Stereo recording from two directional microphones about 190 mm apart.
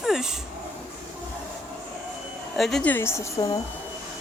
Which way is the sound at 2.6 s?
Centre (ahead or behind).